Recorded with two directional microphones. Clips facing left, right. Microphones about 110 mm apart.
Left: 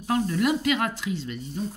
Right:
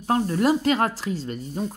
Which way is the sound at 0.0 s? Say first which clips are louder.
Right 3 dB; 35° right (ahead or behind).